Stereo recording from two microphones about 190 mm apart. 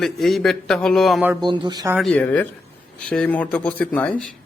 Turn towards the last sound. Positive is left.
turn(degrees=5)  # may be behind; listen again after turning